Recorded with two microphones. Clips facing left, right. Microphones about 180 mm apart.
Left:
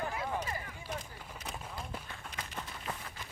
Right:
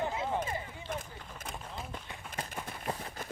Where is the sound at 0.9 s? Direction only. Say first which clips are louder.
Right 2 dB; 50° right (ahead or behind).